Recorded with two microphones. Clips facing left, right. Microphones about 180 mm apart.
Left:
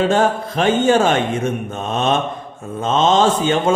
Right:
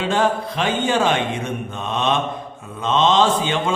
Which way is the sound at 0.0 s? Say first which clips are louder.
Left 4 dB; 45° left (ahead or behind).